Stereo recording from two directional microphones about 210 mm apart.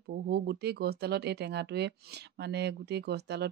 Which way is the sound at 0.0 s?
50° right (ahead or behind).